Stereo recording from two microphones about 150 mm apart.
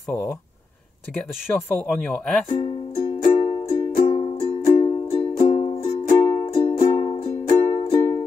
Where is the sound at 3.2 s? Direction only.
65° left (ahead or behind); by 6.2 s 40° left (ahead or behind).